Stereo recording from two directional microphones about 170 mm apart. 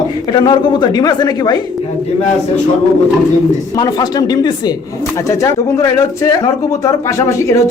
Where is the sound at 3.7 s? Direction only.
25° left (ahead or behind).